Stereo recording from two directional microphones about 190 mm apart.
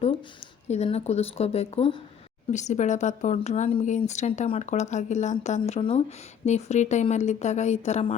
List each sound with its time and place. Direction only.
0.7 s speech: 35° left (ahead or behind)